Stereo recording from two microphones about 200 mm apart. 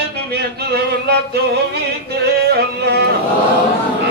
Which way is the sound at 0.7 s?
55° right (ahead or behind).